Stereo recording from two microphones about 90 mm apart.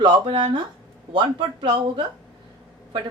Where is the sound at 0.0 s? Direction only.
65° right (ahead or behind).